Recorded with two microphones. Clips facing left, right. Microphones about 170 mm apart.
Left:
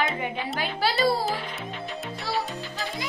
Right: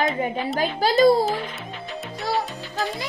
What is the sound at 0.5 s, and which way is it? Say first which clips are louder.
Speech: right 7 dB; 40° right (ahead or behind).